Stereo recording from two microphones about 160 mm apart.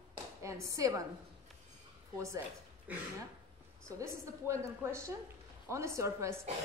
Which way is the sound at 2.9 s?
10° right (ahead or behind).